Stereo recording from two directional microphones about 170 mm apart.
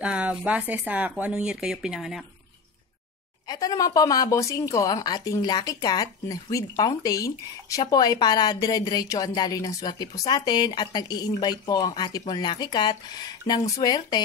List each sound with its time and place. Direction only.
0.0 s speech: 5° right (ahead or behind)
3.4 s a woman's voice: 20° left (ahead or behind)